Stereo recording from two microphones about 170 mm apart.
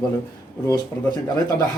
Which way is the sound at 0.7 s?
25° left (ahead or behind).